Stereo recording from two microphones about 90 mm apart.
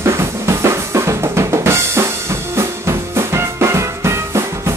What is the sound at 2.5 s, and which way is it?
Music, 30° right (ahead or behind).